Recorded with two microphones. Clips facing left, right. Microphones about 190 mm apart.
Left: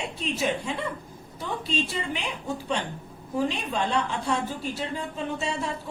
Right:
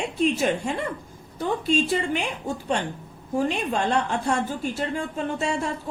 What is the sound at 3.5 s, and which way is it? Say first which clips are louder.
A woman's voice: right 4 dB; 50° right (ahead or behind).